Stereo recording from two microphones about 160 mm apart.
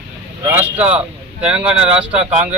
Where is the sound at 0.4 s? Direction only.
10° right (ahead or behind).